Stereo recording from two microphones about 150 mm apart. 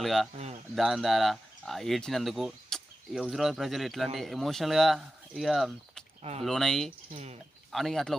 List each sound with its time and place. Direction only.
0.0 s speech: centre (ahead or behind)
0.3 s speech: 45° right (ahead or behind)
0.8 s speech: centre (ahead or behind)
7.1 s speech: 45° right (ahead or behind)
7.7 s speech: centre (ahead or behind)